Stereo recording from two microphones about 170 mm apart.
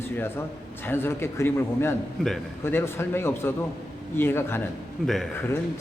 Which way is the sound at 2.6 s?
15° left (ahead or behind).